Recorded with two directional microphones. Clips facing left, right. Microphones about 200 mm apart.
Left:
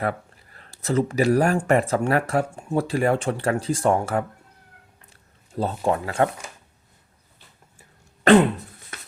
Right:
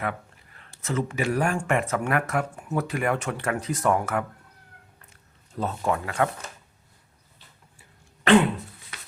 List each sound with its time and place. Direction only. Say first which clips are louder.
0.0 s speech: left 4 dB; 35° left (ahead or behind)
5.5 s speech: left 3 dB; 30° left (ahead or behind)
7.8 s throat clearing: left 3 dB; 40° left (ahead or behind)